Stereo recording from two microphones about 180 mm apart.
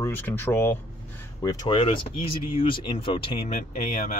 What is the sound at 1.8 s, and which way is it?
Speech, 30° left (ahead or behind).